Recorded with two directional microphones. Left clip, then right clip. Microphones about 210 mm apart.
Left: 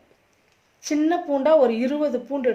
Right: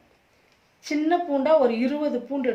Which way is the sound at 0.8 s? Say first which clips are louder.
Left 1 dB; 30° left (ahead or behind).